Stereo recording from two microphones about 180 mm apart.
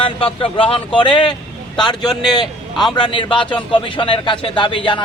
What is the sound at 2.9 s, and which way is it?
Speech, 25° left (ahead or behind).